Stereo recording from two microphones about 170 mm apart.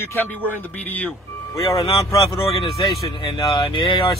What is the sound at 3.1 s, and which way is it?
Speech, 30° left (ahead or behind).